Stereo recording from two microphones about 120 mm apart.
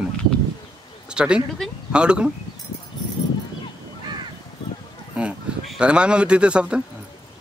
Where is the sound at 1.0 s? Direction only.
5° right (ahead or behind).